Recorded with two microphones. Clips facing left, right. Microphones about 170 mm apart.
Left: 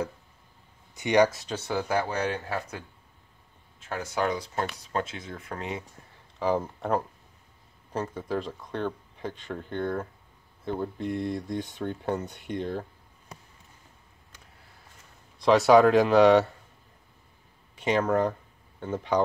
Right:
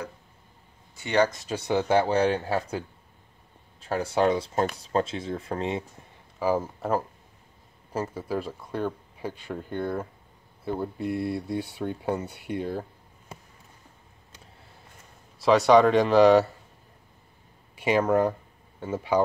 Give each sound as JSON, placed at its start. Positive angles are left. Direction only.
{"t": 0.9, "sound": "speech", "side_deg": 15}
{"t": 1.7, "sound": "speech", "side_deg": -25}
{"t": 3.8, "sound": "speech", "side_deg": -35}
{"t": 6.4, "sound": "speech", "side_deg": -5}
{"t": 15.3, "sound": "speech", "side_deg": 0}
{"t": 17.7, "sound": "speech", "side_deg": -10}